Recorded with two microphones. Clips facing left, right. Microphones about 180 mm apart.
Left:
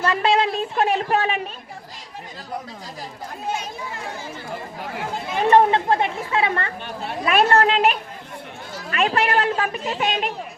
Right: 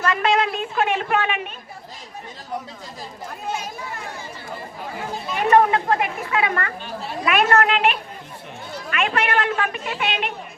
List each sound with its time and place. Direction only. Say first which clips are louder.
0.0 s a woman's voice: left 1 dB; 30° left (ahead or behind)
5.5 s speech: left 1 dB; 30° left (ahead or behind)